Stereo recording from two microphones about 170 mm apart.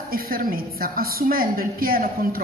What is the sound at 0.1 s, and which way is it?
A woman's voice, 60° right (ahead or behind).